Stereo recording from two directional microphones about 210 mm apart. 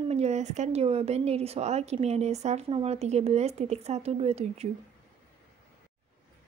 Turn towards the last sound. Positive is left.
turn(degrees=-30)  # may be behind; listen again after turning